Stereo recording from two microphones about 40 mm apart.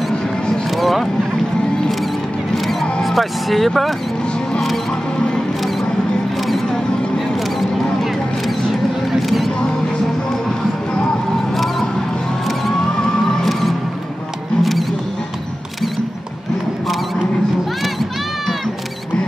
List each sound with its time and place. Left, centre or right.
0.7 s vehicle: centre
2.5 s vehicle: centre
13.0 s music: centre
14.6 s rodents: centre